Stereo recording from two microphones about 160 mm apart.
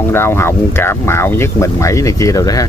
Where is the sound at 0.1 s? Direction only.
15° left (ahead or behind).